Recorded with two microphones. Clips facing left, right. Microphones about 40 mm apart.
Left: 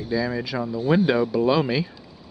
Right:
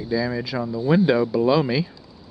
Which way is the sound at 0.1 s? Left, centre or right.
Centre.